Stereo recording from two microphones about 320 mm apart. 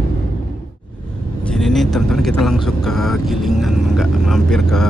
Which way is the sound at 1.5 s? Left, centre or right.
Centre.